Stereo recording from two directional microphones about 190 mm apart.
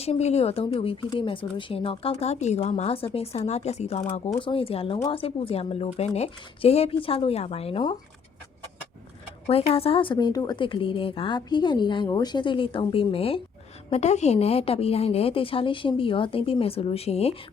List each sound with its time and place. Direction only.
0.0 s a woman's voice: 35° left (ahead or behind)
9.5 s a woman's voice: 30° left (ahead or behind)